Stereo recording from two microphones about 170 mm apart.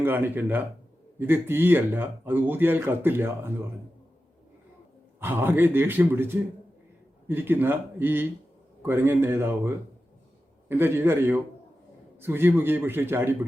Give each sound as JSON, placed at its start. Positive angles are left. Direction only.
{"t": 0.0, "sound": "speech", "side_deg": -10}
{"t": 5.2, "sound": "speech", "side_deg": -10}